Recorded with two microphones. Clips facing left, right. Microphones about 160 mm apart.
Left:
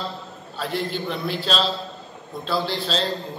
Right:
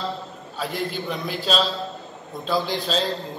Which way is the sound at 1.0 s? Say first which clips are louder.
Left 1 dB; 5° right (ahead or behind).